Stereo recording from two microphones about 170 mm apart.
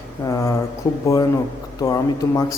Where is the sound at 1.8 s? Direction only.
20° left (ahead or behind).